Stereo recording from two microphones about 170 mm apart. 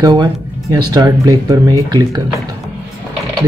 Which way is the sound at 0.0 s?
20° right (ahead or behind).